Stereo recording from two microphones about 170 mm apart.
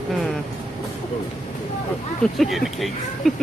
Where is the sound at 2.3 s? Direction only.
Centre (ahead or behind).